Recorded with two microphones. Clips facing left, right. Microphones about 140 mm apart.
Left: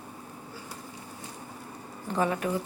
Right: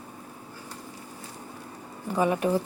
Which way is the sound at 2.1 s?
15° right (ahead or behind).